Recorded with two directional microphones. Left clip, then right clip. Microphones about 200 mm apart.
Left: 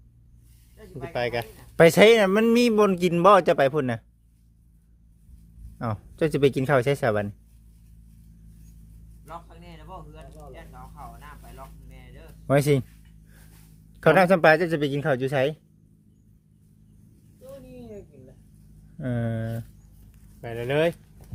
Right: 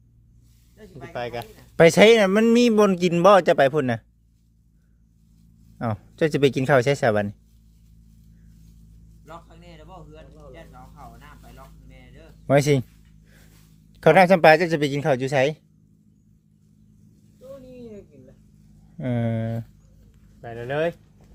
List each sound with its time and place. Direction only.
0.8 s speech: 55° right (ahead or behind)
1.1 s speech: 45° left (ahead or behind)
1.7 s a man's voice: 5° right (ahead or behind)
5.8 s a man's voice: 15° right (ahead or behind)
9.2 s a sound: 55° right (ahead or behind)
12.5 s a man's voice: 10° right (ahead or behind)
13.9 s a man's voice: 10° right (ahead or behind)
17.4 s a sound: centre (ahead or behind)
18.9 s a man's voice: 15° right (ahead or behind)
20.4 s speech: 40° left (ahead or behind)